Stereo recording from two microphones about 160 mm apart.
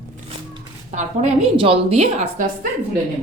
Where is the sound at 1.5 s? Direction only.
35° right (ahead or behind).